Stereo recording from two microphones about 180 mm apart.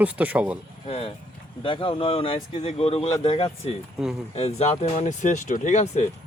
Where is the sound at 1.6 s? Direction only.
30° left (ahead or behind).